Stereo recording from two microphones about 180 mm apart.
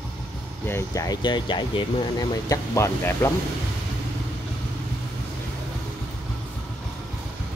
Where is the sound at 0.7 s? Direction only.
15° left (ahead or behind).